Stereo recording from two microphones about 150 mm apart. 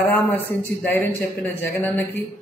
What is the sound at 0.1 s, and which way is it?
A man's voice, 10° left (ahead or behind).